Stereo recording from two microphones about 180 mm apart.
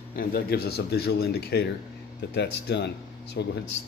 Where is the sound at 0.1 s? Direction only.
55° left (ahead or behind).